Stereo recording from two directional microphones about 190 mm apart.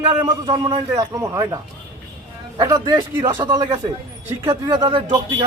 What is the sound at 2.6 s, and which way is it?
Speech, 20° right (ahead or behind).